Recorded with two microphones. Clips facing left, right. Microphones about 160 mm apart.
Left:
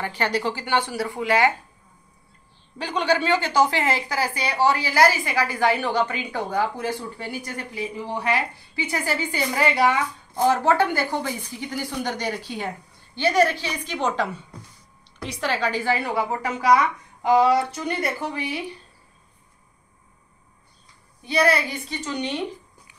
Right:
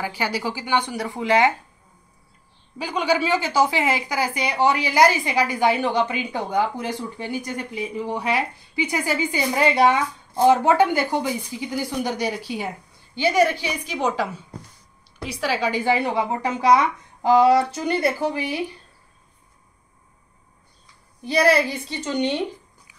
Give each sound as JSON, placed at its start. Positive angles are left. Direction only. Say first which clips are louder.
{"t": 0.0, "sound": "a woman's voice", "louder": "left 1 dB", "side_deg": -10}
{"t": 2.8, "sound": "a woman's voice", "louder": "right 1 dB", "side_deg": -10}
{"t": 21.3, "sound": "a woman's voice", "louder": "right 3 dB", "side_deg": -35}